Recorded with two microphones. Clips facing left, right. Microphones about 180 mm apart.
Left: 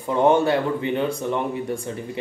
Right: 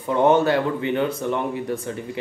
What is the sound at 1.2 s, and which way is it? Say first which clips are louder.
Speech: even; 20° left (ahead or behind).